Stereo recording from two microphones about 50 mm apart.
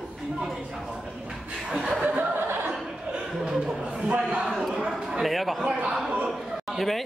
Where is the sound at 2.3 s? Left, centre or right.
Right.